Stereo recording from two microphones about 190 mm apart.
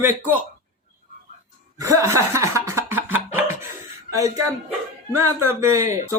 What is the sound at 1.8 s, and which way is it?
Chuckle, 15° right (ahead or behind).